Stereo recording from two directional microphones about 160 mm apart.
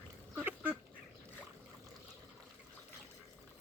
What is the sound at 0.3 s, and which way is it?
Duck, 10° right (ahead or behind).